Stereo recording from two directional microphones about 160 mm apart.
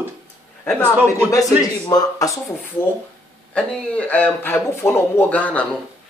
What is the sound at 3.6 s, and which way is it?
Speech, 10° left (ahead or behind).